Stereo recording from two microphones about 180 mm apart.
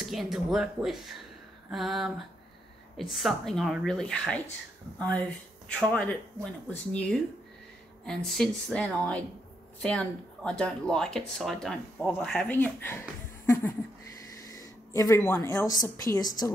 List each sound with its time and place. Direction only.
0.0 s speech: centre (ahead or behind); by 16.5 s 20° left (ahead or behind)